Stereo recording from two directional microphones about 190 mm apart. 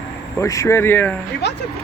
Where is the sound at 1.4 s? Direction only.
60° left (ahead or behind).